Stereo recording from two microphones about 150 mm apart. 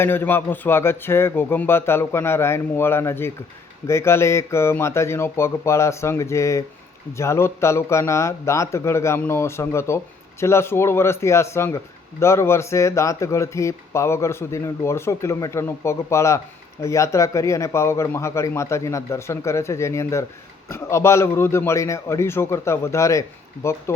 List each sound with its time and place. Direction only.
0.0 s speech: 15° left (ahead or behind)